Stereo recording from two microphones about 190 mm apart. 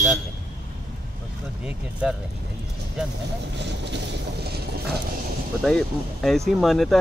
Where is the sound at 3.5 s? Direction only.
65° right (ahead or behind).